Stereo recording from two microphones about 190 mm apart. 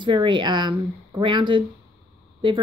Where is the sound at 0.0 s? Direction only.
25° right (ahead or behind).